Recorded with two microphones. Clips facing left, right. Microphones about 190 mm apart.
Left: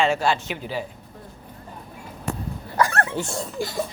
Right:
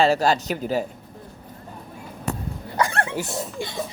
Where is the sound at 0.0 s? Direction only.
40° right (ahead or behind).